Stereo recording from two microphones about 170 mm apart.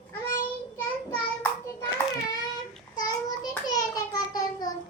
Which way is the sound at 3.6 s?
20° left (ahead or behind).